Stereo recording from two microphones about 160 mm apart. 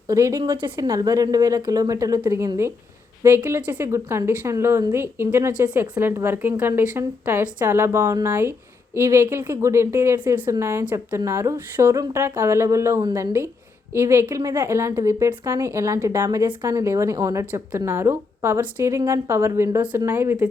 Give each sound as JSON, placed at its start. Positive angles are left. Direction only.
{"t": 0.1, "sound": "a woman's voice", "side_deg": -20}